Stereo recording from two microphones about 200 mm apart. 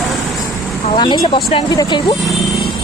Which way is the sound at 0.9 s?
25° left (ahead or behind).